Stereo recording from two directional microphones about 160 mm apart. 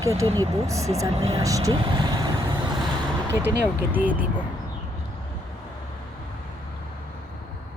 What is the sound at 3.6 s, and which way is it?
Speech, 10° right (ahead or behind).